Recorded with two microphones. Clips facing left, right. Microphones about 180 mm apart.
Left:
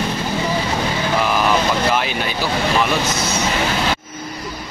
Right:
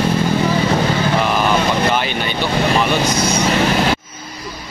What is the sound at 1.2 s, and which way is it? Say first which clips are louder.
Speech: right 1 dB; centre (ahead or behind).